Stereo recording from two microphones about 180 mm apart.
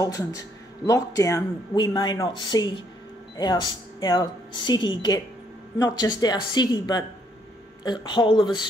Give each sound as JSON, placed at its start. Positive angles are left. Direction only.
{"t": 0.0, "sound": "speech", "side_deg": 20}
{"t": 4.0, "sound": "speech", "side_deg": 25}